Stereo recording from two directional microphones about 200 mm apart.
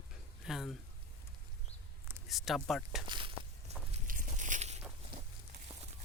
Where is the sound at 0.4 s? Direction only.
Centre (ahead or behind).